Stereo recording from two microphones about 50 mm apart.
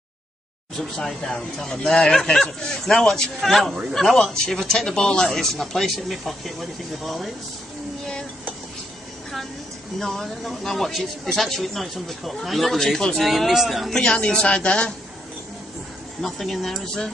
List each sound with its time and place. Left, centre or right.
0.7 s speech: centre
9.9 s speech: centre
13.3 s speech: centre
13.9 s speech: centre
16.2 s speech: centre